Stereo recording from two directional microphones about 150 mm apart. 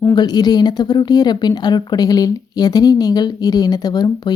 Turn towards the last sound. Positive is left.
turn(degrees=25)  # may be behind; listen again after turning